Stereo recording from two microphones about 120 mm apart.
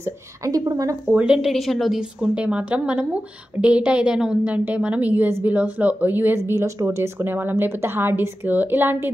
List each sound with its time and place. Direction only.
0.0 s a woman's voice: 30° right (ahead or behind)
1.1 s speech: 5° right (ahead or behind)